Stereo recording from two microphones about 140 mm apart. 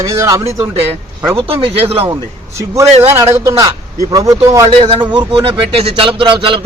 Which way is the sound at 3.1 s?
20° right (ahead or behind).